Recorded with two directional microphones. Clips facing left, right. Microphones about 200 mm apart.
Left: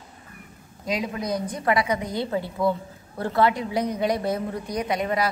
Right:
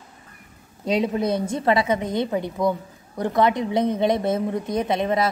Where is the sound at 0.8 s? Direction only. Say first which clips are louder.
Right 6 dB; 30° right (ahead or behind).